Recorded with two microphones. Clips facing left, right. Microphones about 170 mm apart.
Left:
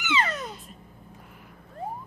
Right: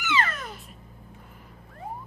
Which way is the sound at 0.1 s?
20° left (ahead or behind).